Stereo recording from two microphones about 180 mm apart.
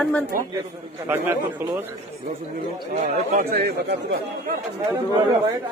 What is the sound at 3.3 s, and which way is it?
Speech, 60° right (ahead or behind).